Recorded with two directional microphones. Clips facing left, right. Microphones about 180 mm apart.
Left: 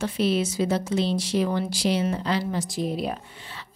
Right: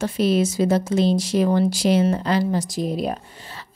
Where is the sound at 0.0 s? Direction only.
45° right (ahead or behind).